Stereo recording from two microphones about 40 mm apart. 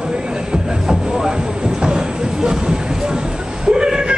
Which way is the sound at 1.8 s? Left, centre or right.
Centre.